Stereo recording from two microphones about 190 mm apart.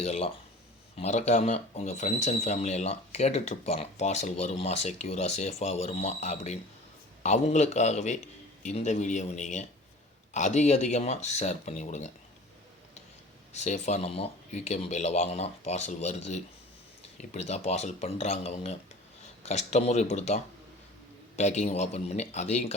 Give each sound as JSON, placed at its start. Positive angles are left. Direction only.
{"t": 0.0, "sound": "speech", "side_deg": 30}
{"t": 13.5, "sound": "speech", "side_deg": 35}